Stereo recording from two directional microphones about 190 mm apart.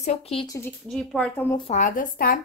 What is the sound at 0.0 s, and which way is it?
Speech, 30° left (ahead or behind).